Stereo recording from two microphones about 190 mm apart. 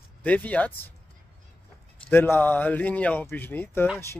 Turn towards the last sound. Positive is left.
turn(degrees=10)  # may be behind; listen again after turning